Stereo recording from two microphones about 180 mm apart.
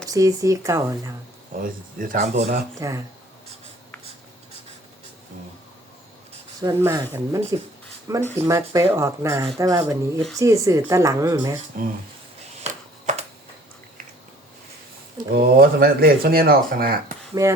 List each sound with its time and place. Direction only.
0.1 s speech: 20° right (ahead or behind)
1.5 s speech: 50° right (ahead or behind)
2.2 s speech: 35° right (ahead or behind)
2.7 s speech: 15° right (ahead or behind)
6.6 s speech: 15° right (ahead or behind)
12.6 s a sound: 40° right (ahead or behind)
15.3 s speech: 55° right (ahead or behind)
17.4 s speech: 15° right (ahead or behind)